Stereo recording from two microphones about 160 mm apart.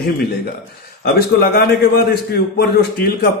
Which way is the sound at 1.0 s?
70° left (ahead or behind).